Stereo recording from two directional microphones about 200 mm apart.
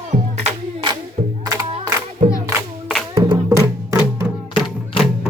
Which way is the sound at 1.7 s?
30° right (ahead or behind).